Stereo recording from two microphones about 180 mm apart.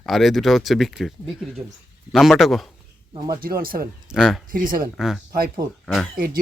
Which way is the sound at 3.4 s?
55° right (ahead or behind).